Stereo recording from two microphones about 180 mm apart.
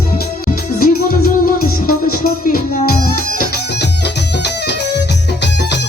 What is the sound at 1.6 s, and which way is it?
Music, 55° left (ahead or behind).